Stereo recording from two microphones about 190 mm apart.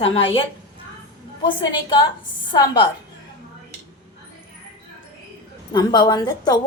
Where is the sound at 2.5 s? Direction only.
25° left (ahead or behind).